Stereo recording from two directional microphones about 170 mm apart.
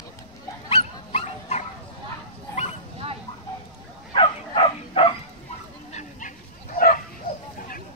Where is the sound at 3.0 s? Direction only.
35° right (ahead or behind).